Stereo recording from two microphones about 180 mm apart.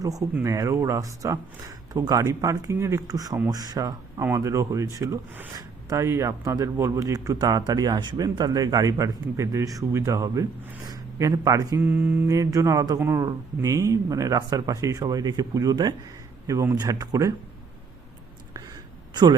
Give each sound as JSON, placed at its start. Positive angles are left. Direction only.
{"t": 0.0, "sound": "speech", "side_deg": -20}
{"t": 10.8, "sound": "mantra", "side_deg": -20}
{"t": 13.0, "sound": "speech", "side_deg": -15}